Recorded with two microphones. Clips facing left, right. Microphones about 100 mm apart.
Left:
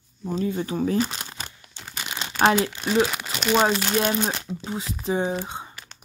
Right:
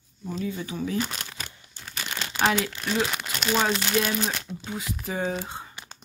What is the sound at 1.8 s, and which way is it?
Crumpling, 85° left.